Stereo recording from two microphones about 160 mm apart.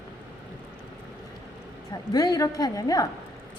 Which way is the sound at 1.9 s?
25° left (ahead or behind).